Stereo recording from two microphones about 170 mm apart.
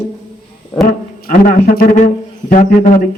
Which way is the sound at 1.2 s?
60° left (ahead or behind).